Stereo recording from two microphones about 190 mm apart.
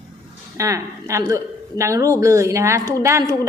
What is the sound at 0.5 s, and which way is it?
A man's voice, 15° right (ahead or behind).